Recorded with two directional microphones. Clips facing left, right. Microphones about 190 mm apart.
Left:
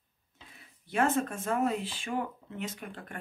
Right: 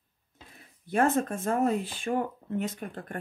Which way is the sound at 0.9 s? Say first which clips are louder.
Right 3 dB; 50° right (ahead or behind).